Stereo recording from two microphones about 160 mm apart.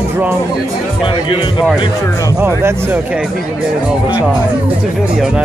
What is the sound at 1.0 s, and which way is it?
Speech, 35° left (ahead or behind).